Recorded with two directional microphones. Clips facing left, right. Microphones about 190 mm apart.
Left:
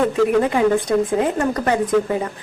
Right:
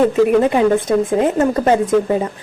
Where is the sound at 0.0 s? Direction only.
25° right (ahead or behind).